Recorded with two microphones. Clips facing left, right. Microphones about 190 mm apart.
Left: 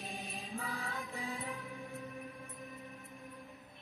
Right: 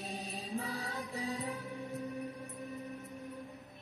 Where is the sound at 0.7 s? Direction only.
40° right (ahead or behind).